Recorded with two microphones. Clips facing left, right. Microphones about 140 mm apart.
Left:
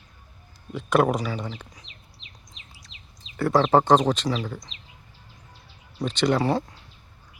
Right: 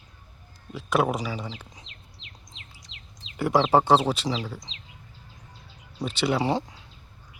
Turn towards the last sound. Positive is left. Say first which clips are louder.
# left 2 dB
turn(degrees=-20)  # may be behind; listen again after turning